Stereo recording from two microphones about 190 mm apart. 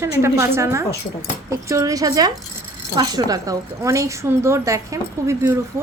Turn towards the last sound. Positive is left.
turn(degrees=-15)  # may be behind; listen again after turning